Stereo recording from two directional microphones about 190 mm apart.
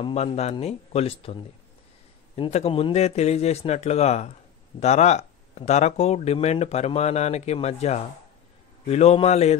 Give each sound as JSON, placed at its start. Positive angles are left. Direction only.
{"t": 0.0, "sound": "speech", "side_deg": 35}